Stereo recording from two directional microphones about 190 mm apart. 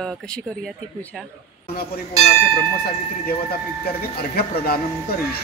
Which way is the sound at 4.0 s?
55° left (ahead or behind).